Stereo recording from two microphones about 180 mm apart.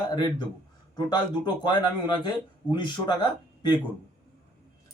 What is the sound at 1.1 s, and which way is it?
Speech, 25° left (ahead or behind).